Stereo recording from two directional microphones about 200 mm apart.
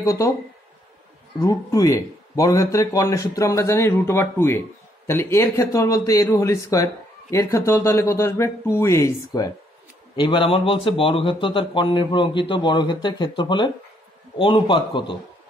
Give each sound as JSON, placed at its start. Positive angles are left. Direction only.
{"t": 0.0, "sound": "speech", "side_deg": 15}
{"t": 1.4, "sound": "a man's voice", "side_deg": 15}